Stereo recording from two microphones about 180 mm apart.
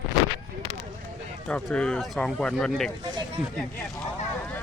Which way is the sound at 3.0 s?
25° right (ahead or behind).